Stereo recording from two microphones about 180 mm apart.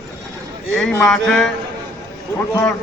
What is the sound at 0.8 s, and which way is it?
A man's voice, centre (ahead or behind).